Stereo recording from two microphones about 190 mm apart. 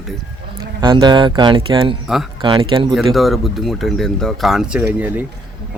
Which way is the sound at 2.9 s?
Centre (ahead or behind).